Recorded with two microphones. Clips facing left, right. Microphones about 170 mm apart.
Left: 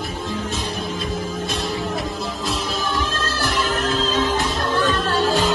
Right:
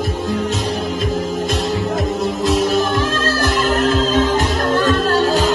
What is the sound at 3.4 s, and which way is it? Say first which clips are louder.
Music: right 5 dB; 50° right (ahead or behind).